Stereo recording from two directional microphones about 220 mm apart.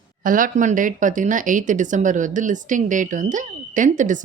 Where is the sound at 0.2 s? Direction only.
40° right (ahead or behind).